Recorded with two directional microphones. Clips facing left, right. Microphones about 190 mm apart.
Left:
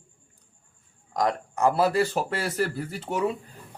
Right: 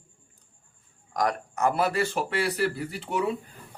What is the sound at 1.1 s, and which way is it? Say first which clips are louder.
Speech: left 1 dB; 25° left (ahead or behind).